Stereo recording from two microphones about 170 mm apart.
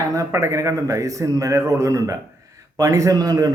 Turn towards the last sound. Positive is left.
turn(degrees=-20)  # may be behind; listen again after turning